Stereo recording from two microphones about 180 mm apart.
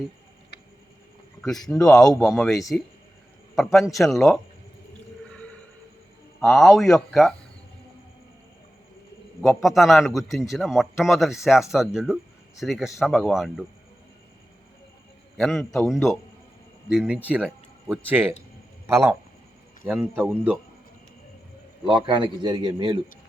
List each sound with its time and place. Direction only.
0.5 s a sound: 65° left (ahead or behind)
1.4 s a man's voice: centre (ahead or behind)
6.4 s a man's voice: centre (ahead or behind)
9.4 s a man's voice: centre (ahead or behind)
15.4 s a man's voice: centre (ahead or behind)
21.8 s a man's voice: 30° right (ahead or behind)